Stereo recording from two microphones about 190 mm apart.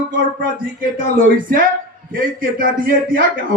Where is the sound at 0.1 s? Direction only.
45° right (ahead or behind).